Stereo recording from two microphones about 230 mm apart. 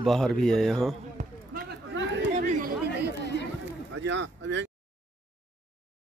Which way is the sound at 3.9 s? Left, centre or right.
Right.